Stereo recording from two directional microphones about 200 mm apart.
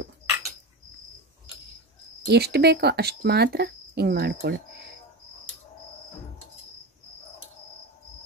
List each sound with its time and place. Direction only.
2.2 s speech: 55° right (ahead or behind)